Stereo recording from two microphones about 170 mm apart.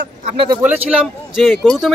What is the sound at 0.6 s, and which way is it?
Speech, 5° right (ahead or behind).